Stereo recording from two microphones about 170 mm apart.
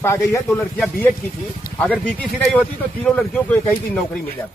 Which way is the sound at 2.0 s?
5° left (ahead or behind).